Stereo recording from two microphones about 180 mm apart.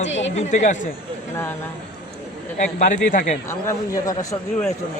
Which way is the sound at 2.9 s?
45° left (ahead or behind).